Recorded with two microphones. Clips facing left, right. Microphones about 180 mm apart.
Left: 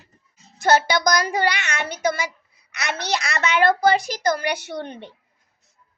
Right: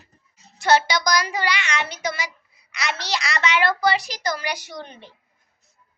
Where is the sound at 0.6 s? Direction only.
50° left (ahead or behind).